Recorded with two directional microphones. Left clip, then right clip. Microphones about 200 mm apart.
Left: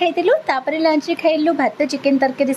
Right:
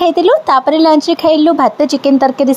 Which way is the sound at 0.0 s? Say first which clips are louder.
Right 6 dB; 25° right (ahead or behind).